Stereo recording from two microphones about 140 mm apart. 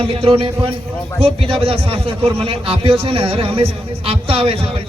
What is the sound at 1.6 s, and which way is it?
A man's voice, 40° right (ahead or behind).